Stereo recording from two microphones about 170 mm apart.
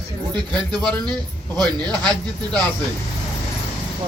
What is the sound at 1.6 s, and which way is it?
Speech, 25° right (ahead or behind).